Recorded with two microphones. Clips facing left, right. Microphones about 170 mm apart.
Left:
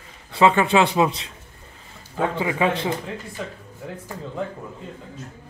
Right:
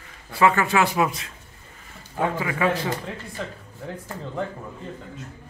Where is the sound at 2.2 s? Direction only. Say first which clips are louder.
Left 2 dB; 20° left (ahead or behind).